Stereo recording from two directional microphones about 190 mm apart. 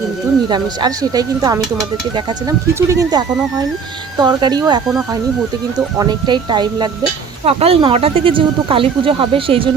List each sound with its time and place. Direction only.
0.4 s speech: 25° right (ahead or behind)
6.0 s speech: 20° right (ahead or behind)